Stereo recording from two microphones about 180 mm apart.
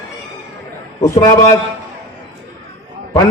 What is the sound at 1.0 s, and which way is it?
Speech, 15° left (ahead or behind).